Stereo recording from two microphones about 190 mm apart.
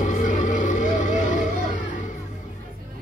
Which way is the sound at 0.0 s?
40° left (ahead or behind).